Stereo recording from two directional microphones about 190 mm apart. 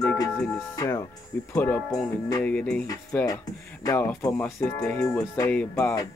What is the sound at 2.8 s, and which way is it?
Speech, 20° left (ahead or behind).